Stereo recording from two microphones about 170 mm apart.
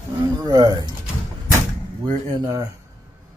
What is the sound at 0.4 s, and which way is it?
Speech, 20° right (ahead or behind).